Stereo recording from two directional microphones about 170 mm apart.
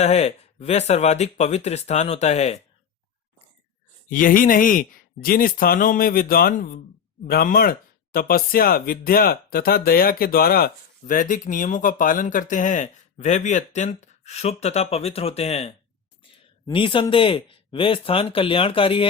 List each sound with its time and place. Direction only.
0.0 s speech: 40° left (ahead or behind)
4.1 s speech: 55° left (ahead or behind)
16.7 s speech: 30° left (ahead or behind)